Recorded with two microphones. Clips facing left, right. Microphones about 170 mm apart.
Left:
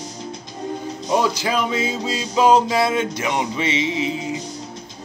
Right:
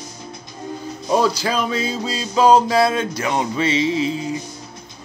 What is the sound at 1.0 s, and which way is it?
Music, 20° left (ahead or behind).